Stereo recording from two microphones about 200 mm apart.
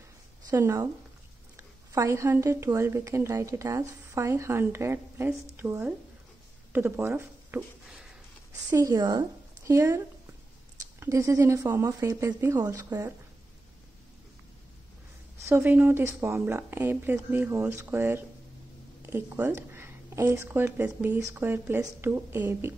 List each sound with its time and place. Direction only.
0.5 s speech: 15° right (ahead or behind)
8.6 s speech: 15° right (ahead or behind)
15.4 s speech: 10° right (ahead or behind)